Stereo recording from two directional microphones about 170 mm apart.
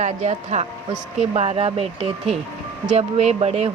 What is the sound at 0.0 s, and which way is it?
Speech, 40° right (ahead or behind).